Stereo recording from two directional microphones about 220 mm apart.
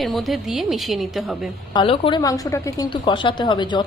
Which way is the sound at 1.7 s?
25° left (ahead or behind).